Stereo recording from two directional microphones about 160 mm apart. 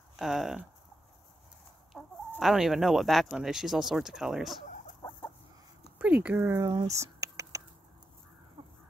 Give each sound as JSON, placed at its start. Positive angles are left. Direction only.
{"t": 0.1, "sound": "speech", "side_deg": 0}
{"t": 2.0, "sound": "chicken", "side_deg": 0}
{"t": 5.9, "sound": "speech", "side_deg": -10}
{"t": 7.0, "sound": "typing", "side_deg": -20}
{"t": 8.6, "sound": "crow", "side_deg": -35}